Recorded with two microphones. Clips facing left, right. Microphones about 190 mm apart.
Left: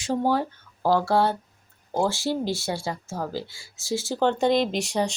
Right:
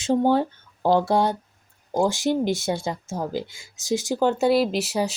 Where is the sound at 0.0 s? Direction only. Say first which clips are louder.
Right 4 dB; 25° right (ahead or behind).